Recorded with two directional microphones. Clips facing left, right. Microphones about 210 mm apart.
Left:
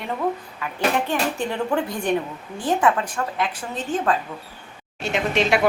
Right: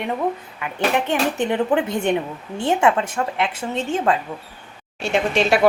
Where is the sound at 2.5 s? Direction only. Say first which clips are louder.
Right 2 dB; 25° right (ahead or behind).